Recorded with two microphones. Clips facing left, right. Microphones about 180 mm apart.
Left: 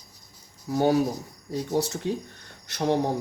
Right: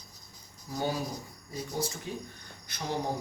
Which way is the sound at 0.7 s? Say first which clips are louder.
Left 11 dB; 65° left (ahead or behind).